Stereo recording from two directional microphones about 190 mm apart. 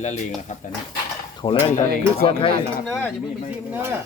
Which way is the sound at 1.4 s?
20° left (ahead or behind).